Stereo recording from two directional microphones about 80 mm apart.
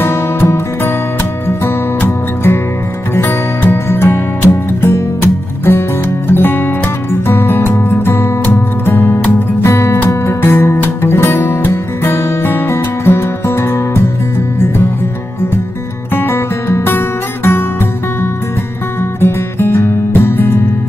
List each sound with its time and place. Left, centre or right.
0.0 s music: left
2.0 s music: left
9.7 s music: left
16.2 s music: left
19.2 s music: left